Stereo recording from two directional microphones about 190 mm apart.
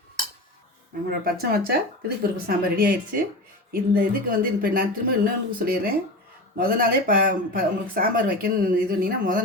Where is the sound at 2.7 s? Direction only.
50° right (ahead or behind).